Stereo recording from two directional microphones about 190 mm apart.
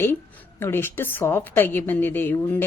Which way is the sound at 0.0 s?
10° left (ahead or behind).